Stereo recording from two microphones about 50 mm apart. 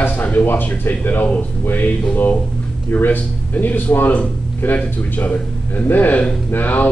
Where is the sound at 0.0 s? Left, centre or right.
Left.